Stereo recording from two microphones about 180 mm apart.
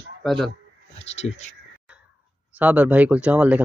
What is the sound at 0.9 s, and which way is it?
Speech, 40° left (ahead or behind).